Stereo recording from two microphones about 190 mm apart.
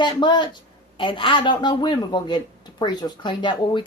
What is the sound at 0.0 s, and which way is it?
A woman's voice, 25° left (ahead or behind).